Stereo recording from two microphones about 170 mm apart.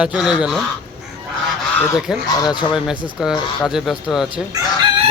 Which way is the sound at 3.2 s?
5° right (ahead or behind).